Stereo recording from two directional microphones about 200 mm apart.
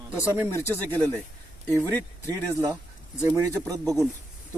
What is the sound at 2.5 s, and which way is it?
Speech, 15° right (ahead or behind).